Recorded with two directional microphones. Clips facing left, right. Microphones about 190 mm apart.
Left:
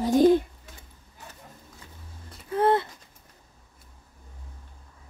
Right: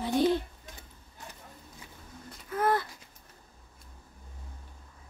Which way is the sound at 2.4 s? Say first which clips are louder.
Left 6 dB; 25° left (ahead or behind).